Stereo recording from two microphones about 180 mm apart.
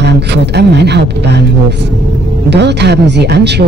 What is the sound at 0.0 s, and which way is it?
Speech, 70° right (ahead or behind).